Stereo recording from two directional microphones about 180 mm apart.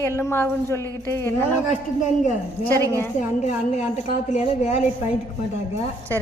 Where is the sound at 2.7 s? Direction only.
10° left (ahead or behind).